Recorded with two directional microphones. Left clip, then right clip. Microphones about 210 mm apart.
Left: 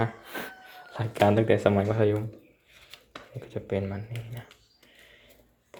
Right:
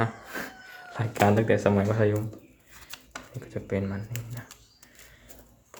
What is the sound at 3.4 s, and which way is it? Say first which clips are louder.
Speech: left 1 dB; 5° left (ahead or behind).